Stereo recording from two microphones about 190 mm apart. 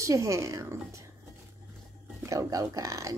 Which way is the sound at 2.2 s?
15° right (ahead or behind).